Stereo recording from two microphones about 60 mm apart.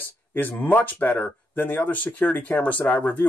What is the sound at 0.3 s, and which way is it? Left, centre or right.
Speech, left.